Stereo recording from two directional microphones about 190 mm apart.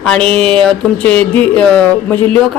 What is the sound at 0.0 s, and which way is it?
Speech, 5° left (ahead or behind).